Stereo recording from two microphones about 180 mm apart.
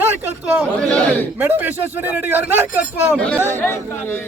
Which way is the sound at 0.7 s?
5° left (ahead or behind).